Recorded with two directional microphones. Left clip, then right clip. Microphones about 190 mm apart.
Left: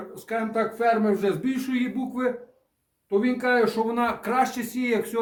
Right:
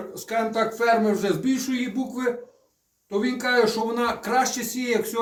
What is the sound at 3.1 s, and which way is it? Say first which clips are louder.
Speech: left 1 dB; 10° left (ahead or behind).